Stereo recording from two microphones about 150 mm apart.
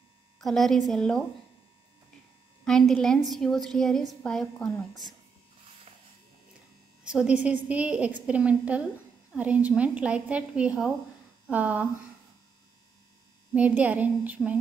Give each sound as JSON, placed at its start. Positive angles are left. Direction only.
{"t": 0.4, "sound": "a woman's voice", "side_deg": 0}
{"t": 2.6, "sound": "a woman's voice", "side_deg": 5}
{"t": 7.1, "sound": "a woman's voice", "side_deg": -5}
{"t": 13.6, "sound": "a woman's voice", "side_deg": -10}